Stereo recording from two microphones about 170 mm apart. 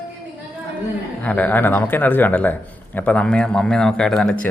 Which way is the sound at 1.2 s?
10° left (ahead or behind).